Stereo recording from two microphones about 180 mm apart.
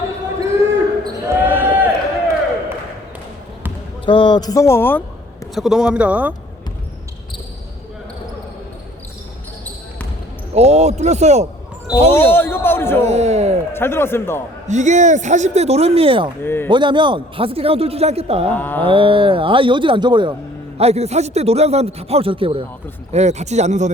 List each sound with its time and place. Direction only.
0.4 s basketball bounce: 15° right (ahead or behind)
4.0 s a man's voice: 25° left (ahead or behind); by 5.0 s 10° left (ahead or behind)
5.5 s speech: 5° right (ahead or behind)
10.5 s a man's voice: 35° right (ahead or behind)
12.1 s a man's voice: 10° left (ahead or behind)
13.1 s a man's voice: 40° right (ahead or behind)
13.7 s a man's voice: 15° left (ahead or behind)
14.7 s a man's voice: 40° right (ahead or behind)
16.4 s a man's voice: 10° left (ahead or behind)
16.6 s a man's voice: 25° right (ahead or behind)
18.5 s a man's voice: 10° left (ahead or behind)
18.9 s speech: 30° right (ahead or behind)
20.7 s a man's voice: 35° right (ahead or behind)